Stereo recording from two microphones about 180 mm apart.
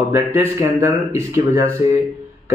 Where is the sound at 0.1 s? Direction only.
15° right (ahead or behind).